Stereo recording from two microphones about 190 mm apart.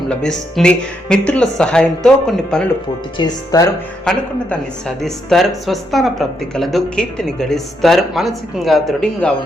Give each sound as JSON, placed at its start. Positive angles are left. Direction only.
{"t": 0.1, "sound": "speech", "side_deg": 5}
{"t": 3.2, "sound": "speech", "side_deg": 20}
{"t": 4.0, "sound": "speech", "side_deg": 5}